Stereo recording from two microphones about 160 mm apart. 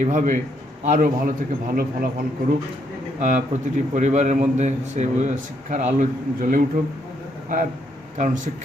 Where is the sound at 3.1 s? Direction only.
50° right (ahead or behind).